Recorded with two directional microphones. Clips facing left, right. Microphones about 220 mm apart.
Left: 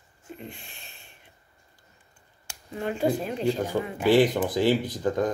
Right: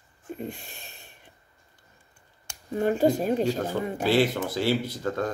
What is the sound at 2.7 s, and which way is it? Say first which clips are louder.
Speech: right 4 dB; 40° right (ahead or behind).